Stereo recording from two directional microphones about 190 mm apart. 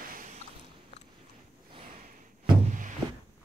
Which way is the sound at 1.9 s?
45° right (ahead or behind).